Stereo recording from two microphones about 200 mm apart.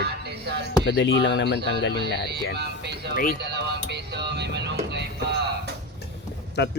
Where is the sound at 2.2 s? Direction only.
55° right (ahead or behind).